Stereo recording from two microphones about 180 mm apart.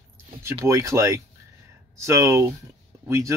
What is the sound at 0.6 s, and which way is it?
Speech, 15° right (ahead or behind).